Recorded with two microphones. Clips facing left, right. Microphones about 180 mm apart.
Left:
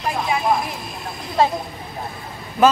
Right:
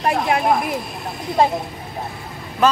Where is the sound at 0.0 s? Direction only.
65° right (ahead or behind).